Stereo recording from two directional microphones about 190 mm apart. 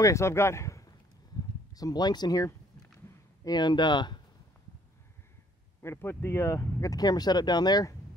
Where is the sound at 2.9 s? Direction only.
20° left (ahead or behind).